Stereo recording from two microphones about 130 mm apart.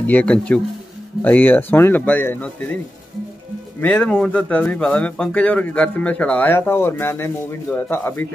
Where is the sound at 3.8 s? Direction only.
10° left (ahead or behind).